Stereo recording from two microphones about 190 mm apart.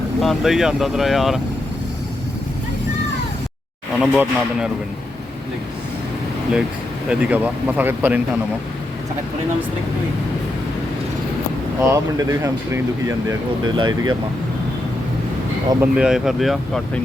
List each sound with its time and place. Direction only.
0.2 s speech: centre (ahead or behind)
4.0 s speech: 5° right (ahead or behind)
7.1 s speech: 5° right (ahead or behind)
11.8 s speech: 15° right (ahead or behind)
15.7 s speech: 5° right (ahead or behind)